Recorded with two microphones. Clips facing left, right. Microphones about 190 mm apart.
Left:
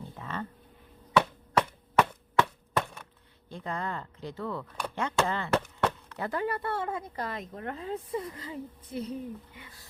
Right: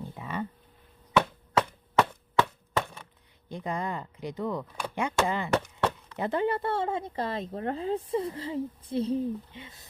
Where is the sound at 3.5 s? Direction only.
15° right (ahead or behind).